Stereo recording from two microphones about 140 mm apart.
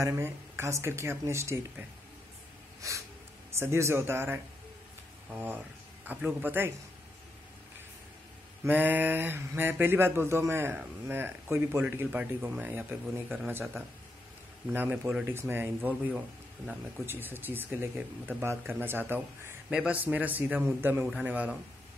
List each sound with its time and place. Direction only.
0.0 s speech: 20° right (ahead or behind)
2.8 s speech: 25° right (ahead or behind)
8.6 s speech: 15° right (ahead or behind)
14.7 s speech: 15° right (ahead or behind)